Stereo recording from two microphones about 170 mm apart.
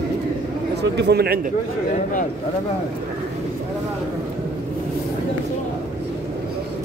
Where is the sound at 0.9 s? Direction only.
75° right (ahead or behind).